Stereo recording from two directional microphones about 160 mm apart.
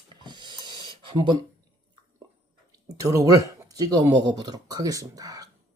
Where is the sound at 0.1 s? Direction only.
30° right (ahead or behind).